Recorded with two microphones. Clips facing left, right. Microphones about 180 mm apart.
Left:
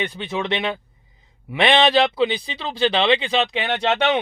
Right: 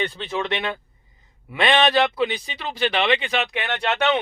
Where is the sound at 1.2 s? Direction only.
15° left (ahead or behind).